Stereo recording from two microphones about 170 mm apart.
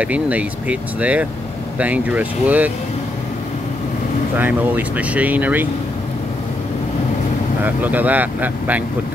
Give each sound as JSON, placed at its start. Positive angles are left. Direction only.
{"t": 0.0, "sound": "speech", "side_deg": -10}
{"t": 4.4, "sound": "speech", "side_deg": -10}
{"t": 7.6, "sound": "speech", "side_deg": -10}